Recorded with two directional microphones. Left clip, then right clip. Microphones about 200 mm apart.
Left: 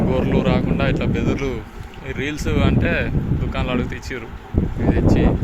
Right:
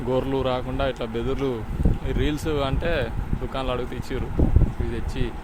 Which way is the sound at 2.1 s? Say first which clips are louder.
Left 3 dB; 20° right (ahead or behind).